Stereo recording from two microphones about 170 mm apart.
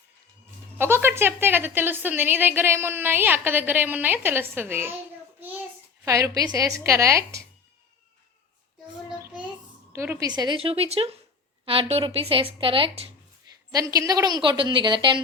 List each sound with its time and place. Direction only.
0.8 s a woman's voice: 15° right (ahead or behind)
6.1 s a woman's voice: 20° right (ahead or behind)
9.0 s child singing: 5° right (ahead or behind)
9.9 s a woman's voice: 15° right (ahead or behind); by 13.1 s 30° right (ahead or behind)
13.7 s a woman's voice: 20° right (ahead or behind)